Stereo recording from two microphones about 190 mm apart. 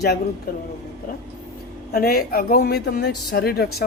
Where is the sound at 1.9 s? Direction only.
55° left (ahead or behind).